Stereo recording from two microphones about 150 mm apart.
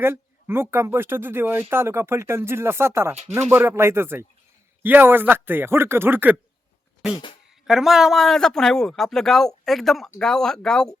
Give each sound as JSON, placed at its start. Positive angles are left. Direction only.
{"t": 0.0, "sound": "speech", "side_deg": -15}
{"t": 7.7, "sound": "speech", "side_deg": 0}